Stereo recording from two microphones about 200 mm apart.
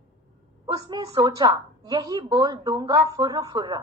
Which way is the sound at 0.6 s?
15° right (ahead or behind).